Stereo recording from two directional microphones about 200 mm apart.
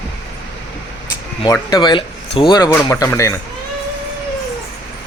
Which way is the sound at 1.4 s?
20° left (ahead or behind).